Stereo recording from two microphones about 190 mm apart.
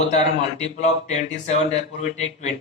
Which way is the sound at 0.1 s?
35° left (ahead or behind).